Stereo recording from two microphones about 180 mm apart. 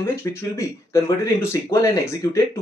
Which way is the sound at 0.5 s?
15° left (ahead or behind).